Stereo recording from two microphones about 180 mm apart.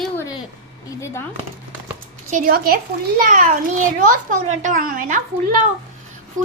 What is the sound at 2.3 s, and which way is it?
A woman's voice, 50° right (ahead or behind).